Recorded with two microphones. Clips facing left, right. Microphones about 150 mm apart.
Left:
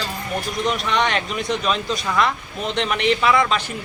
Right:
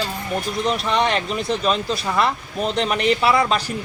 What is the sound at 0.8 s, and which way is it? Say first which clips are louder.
Speech: right 1 dB; 35° right (ahead or behind).